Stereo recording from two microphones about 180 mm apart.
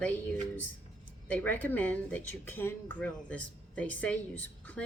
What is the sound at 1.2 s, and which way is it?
A woman's voice, 10° left (ahead or behind).